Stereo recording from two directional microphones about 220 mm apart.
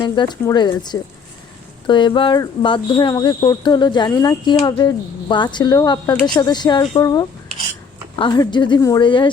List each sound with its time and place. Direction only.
0.2 s speech: 20° left (ahead or behind)